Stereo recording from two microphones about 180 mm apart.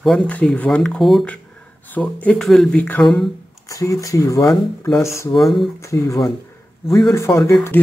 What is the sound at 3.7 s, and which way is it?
Speech, 20° left (ahead or behind).